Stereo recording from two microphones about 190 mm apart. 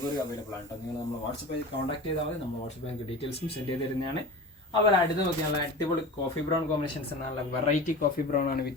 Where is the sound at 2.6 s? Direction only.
30° left (ahead or behind).